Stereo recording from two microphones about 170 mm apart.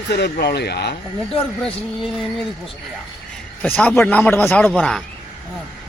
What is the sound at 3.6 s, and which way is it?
Speech, 10° left (ahead or behind).